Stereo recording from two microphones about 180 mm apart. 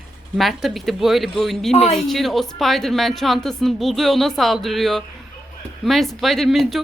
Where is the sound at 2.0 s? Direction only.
Centre (ahead or behind).